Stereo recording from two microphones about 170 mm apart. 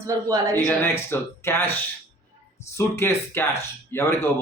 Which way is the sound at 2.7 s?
15° left (ahead or behind).